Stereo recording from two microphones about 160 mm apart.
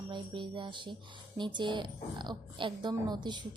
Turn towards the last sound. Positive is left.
turn(degrees=-30)  # may be behind; listen again after turning